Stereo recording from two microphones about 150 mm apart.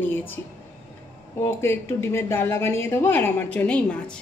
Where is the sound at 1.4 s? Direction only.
15° left (ahead or behind).